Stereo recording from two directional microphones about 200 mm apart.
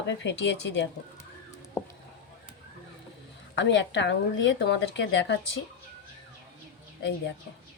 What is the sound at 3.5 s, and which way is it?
A woman's voice, 65° left (ahead or behind).